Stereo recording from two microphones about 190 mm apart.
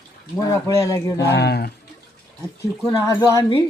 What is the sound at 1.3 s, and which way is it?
Speech, 60° left (ahead or behind).